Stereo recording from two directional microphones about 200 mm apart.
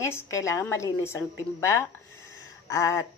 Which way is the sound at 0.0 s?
15° left (ahead or behind).